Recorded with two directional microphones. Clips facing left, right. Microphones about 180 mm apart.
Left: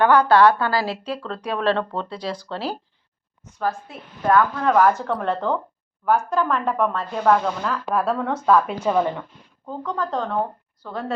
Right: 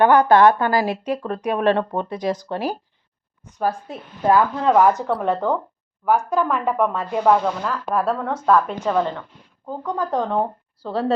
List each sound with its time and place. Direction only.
0.0 s speech: 20° right (ahead or behind)
3.6 s a woman's voice: 30° right (ahead or behind); by 7.8 s 10° right (ahead or behind)
7.9 s speech: centre (ahead or behind)
8.8 s a woman's voice: 10° left (ahead or behind)
9.6 s speech: 10° right (ahead or behind)